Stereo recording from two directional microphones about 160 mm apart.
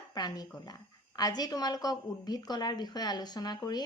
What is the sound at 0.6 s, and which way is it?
Speech, 25° left (ahead or behind).